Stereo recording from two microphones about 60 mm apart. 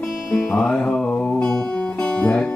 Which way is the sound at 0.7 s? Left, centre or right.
Centre.